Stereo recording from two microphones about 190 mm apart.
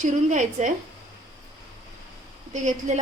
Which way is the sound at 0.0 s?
40° right (ahead or behind).